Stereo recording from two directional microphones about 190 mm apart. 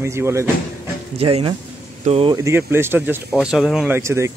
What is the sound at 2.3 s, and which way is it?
Speech, 15° right (ahead or behind).